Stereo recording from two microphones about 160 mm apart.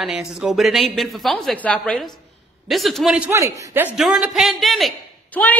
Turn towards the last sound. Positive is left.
turn(degrees=5)  # may be behind; listen again after turning